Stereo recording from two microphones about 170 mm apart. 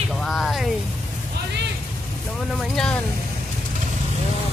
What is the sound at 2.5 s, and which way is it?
Speech, 5° left (ahead or behind).